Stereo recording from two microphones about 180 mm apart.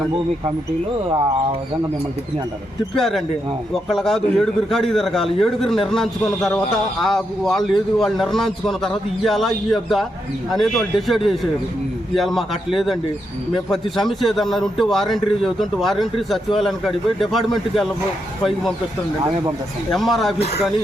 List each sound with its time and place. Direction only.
2.9 s a man's voice: centre (ahead or behind)
19.9 s a man's voice: centre (ahead or behind)